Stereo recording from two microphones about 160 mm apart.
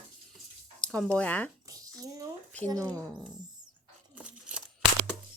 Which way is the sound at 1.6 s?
20° right (ahead or behind).